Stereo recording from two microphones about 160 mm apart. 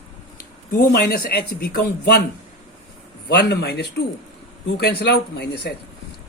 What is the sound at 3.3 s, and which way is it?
Speech, 90° left.